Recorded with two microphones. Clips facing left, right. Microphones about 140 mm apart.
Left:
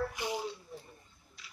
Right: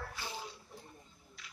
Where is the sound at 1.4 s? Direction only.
Centre (ahead or behind).